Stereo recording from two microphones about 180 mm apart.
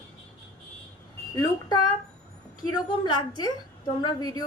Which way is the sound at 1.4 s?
20° left (ahead or behind).